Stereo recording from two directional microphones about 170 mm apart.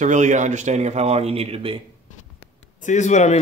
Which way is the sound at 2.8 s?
45° left (ahead or behind).